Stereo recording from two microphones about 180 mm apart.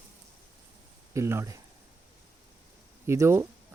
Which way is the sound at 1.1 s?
15° right (ahead or behind).